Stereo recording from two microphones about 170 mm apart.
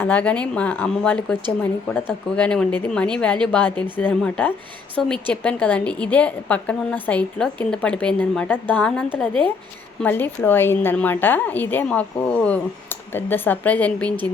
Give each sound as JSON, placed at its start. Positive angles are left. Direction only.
{"t": 0.0, "sound": "a woman's voice", "side_deg": 10}